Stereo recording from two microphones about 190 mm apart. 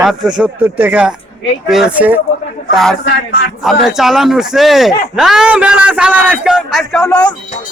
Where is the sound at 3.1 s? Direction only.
70° left (ahead or behind).